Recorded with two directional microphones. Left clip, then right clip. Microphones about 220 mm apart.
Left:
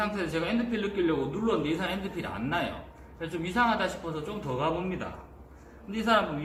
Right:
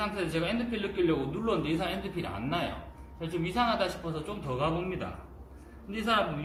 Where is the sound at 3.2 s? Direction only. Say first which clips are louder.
Left 2 dB; 30° left (ahead or behind).